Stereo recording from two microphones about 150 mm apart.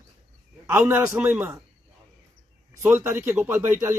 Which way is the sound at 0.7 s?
15° right (ahead or behind).